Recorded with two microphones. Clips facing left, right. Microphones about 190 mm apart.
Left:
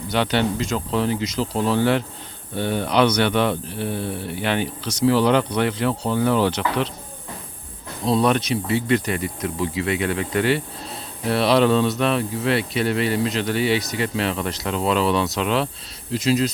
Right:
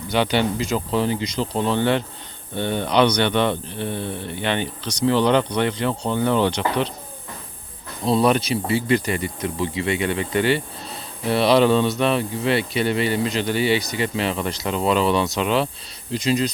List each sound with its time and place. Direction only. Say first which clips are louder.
0.1 s speech: right 1 dB; centre (ahead or behind)
8.0 s speech: right 1 dB; centre (ahead or behind)